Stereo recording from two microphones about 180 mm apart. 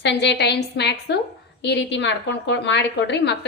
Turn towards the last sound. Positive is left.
turn(degrees=75)  # may be behind; listen again after turning